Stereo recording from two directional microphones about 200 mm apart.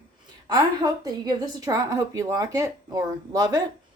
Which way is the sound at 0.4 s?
20° right (ahead or behind).